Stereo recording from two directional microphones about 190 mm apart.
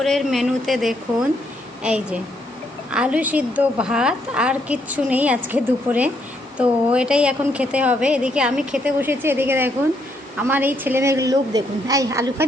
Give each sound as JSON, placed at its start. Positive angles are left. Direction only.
{"t": 0.0, "sound": "a woman's voice", "side_deg": 0}